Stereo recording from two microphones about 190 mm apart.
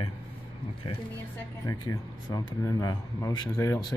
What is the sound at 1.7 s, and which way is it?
Speech, 20° left (ahead or behind).